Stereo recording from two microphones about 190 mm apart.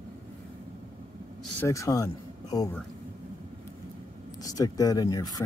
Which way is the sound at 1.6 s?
15° left (ahead or behind).